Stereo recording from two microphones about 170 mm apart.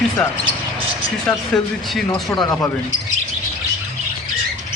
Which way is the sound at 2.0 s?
20° left (ahead or behind).